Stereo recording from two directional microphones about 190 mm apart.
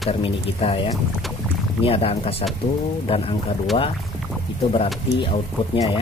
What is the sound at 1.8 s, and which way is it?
Speech, 30° left (ahead or behind).